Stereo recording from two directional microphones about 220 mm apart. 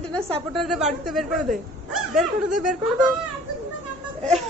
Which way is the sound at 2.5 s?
Centre (ahead or behind).